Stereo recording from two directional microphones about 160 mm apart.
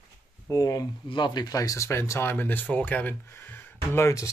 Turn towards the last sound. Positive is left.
turn(degrees=20)  # may be behind; listen again after turning